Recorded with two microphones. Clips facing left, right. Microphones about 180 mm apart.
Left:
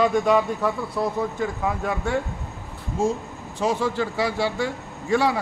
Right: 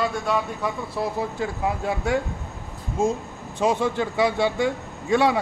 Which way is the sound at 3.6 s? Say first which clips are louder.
Right 1 dB; 20° right (ahead or behind).